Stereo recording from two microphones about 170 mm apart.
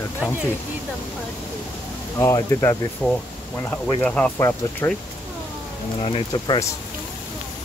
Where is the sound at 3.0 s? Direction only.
5° left (ahead or behind).